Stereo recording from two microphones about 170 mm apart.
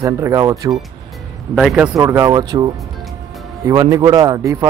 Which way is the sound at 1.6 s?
5° right (ahead or behind).